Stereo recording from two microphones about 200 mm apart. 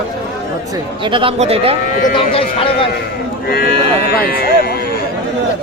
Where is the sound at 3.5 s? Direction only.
50° left (ahead or behind).